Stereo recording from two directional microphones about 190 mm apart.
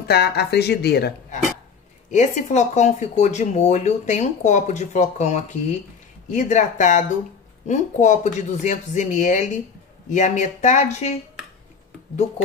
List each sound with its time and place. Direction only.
0.1 s speech: 60° left (ahead or behind)
2.0 s speech: 40° left (ahead or behind)